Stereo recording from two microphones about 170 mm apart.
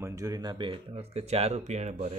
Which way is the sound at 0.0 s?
20° right (ahead or behind).